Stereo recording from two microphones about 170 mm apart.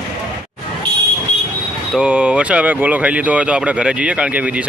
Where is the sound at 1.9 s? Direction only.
5° right (ahead or behind).